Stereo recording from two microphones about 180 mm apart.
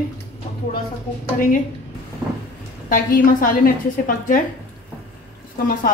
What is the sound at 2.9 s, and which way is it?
Speech, 50° left (ahead or behind).